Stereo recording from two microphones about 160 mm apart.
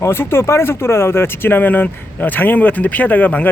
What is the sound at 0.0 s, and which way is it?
Speech, 15° left (ahead or behind).